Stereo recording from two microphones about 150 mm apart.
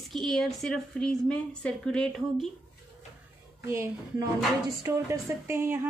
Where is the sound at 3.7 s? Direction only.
20° right (ahead or behind).